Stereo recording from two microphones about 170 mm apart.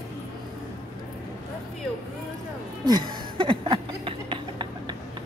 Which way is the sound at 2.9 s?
25° right (ahead or behind).